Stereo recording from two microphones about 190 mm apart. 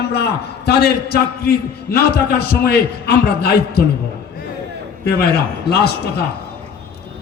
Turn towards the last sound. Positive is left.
turn(degrees=55)  # may be behind; listen again after turning